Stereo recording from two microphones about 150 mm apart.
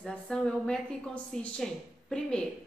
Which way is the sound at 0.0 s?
5° left (ahead or behind).